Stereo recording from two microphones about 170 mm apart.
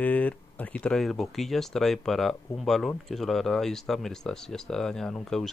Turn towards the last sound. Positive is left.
turn(degrees=0)  # may be behind; listen again after turning